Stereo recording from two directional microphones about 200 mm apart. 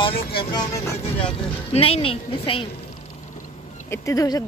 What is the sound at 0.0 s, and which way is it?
Speech, 25° left (ahead or behind).